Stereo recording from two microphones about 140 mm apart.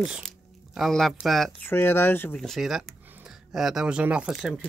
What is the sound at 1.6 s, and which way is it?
Speech, 15° left (ahead or behind).